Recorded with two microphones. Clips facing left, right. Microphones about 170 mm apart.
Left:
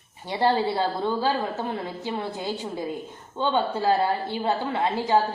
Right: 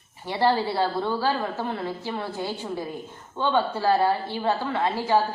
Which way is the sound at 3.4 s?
20° left (ahead or behind).